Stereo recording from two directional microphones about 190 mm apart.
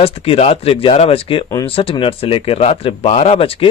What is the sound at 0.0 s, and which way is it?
Speech, 30° left (ahead or behind).